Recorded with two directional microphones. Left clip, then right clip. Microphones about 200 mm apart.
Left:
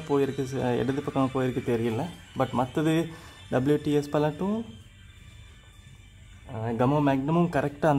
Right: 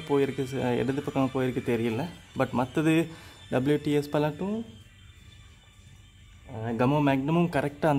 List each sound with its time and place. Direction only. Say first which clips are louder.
0.4 s speech: left 1 dB; 5° right (ahead or behind)
6.4 s speech: left 1 dB; 5° right (ahead or behind)